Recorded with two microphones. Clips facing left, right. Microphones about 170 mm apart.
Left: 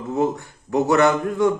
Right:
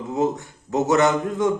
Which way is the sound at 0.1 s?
20° right (ahead or behind).